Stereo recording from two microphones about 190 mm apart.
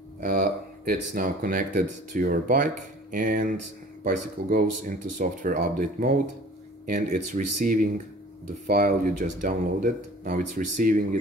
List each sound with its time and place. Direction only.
0.2 s speech: 50° right (ahead or behind)